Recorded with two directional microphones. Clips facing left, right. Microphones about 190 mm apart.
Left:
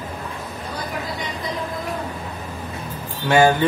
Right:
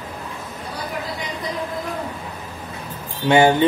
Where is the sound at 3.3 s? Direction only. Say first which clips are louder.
Right 1 dB; 20° right (ahead or behind).